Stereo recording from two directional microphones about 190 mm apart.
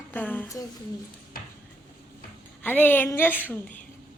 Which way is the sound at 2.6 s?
10° left (ahead or behind).